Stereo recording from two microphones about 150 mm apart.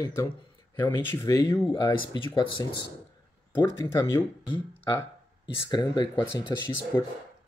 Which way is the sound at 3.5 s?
15° left (ahead or behind).